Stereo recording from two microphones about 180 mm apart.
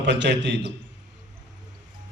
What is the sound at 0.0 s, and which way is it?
Speech, 75° right (ahead or behind).